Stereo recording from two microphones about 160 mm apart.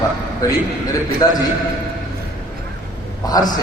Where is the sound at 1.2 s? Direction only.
25° left (ahead or behind).